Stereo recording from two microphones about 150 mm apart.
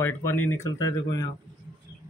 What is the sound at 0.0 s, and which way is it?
Speech, 15° left (ahead or behind).